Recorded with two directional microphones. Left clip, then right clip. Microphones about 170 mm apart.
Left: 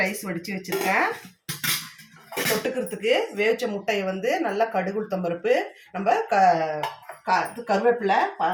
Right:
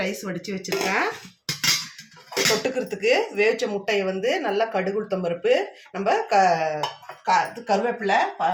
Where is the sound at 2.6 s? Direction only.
40° right (ahead or behind).